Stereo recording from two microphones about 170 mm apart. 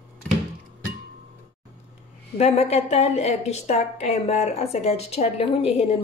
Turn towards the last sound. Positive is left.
turn(degrees=35)  # may be behind; listen again after turning